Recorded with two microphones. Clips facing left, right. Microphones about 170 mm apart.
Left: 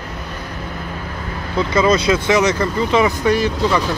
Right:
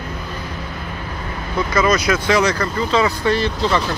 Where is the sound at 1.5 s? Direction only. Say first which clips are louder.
Left 2 dB; 25° left (ahead or behind); by 3.8 s 10° left (ahead or behind).